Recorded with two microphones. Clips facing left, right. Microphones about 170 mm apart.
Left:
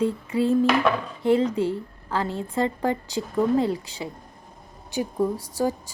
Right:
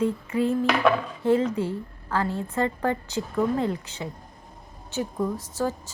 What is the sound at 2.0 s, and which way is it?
A woman's voice, 25° left (ahead or behind).